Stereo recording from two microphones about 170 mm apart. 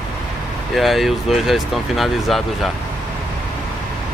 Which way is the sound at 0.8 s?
Centre (ahead or behind).